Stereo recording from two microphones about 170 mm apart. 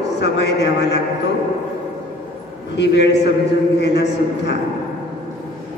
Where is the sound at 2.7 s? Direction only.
90° left.